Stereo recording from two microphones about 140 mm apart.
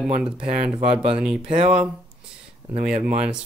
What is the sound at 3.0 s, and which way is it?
Speech, 45° right (ahead or behind).